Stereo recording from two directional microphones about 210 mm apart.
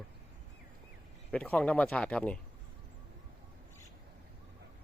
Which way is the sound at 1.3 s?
5° left (ahead or behind).